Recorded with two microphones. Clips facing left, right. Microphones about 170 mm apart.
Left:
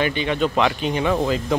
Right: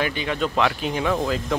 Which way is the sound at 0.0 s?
Centre (ahead or behind).